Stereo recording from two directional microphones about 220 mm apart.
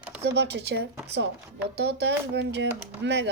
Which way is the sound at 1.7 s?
50° right (ahead or behind).